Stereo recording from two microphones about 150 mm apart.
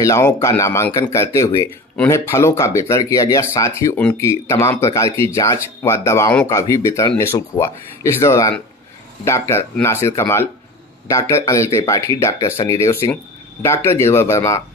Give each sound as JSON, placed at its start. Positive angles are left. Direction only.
{"t": 0.0, "sound": "speech", "side_deg": 20}